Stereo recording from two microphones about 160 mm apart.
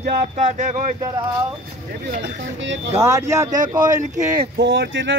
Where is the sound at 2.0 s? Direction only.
60° right (ahead or behind).